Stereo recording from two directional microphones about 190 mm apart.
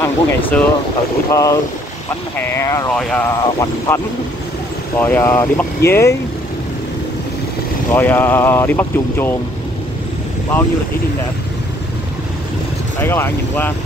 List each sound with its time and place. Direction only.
0.0 s speech: 10° left (ahead or behind)
3.3 s speech: 15° left (ahead or behind)
7.9 s speech: 10° left (ahead or behind)
13.0 s speech: 10° left (ahead or behind)